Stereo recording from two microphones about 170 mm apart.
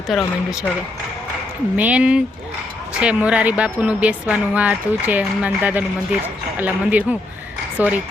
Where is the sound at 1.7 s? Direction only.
10° right (ahead or behind).